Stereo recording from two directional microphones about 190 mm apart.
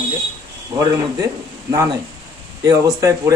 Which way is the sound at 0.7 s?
20° right (ahead or behind).